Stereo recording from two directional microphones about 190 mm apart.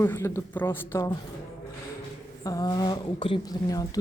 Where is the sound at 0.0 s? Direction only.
15° left (ahead or behind).